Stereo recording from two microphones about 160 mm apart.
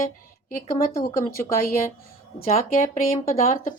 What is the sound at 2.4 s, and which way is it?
Speech, 45° left (ahead or behind).